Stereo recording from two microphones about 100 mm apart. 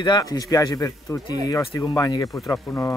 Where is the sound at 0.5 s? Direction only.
35° left (ahead or behind).